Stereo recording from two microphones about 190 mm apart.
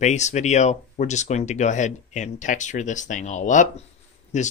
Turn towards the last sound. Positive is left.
turn(degrees=40)  # may be behind; listen again after turning